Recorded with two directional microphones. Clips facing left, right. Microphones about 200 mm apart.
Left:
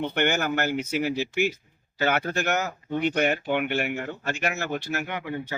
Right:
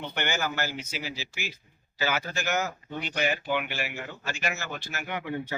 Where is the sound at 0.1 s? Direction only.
55° left (ahead or behind).